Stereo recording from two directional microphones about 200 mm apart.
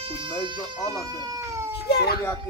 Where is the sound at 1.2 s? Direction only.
15° right (ahead or behind).